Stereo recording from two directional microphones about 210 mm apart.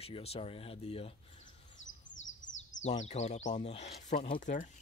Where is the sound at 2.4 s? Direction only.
35° left (ahead or behind).